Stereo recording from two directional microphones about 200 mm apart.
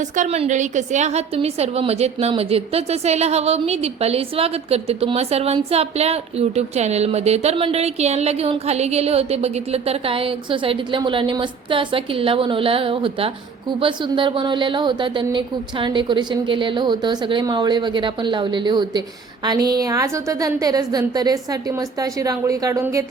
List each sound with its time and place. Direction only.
0.2 s a woman's voice: 35° right (ahead or behind); by 23.0 s 15° right (ahead or behind)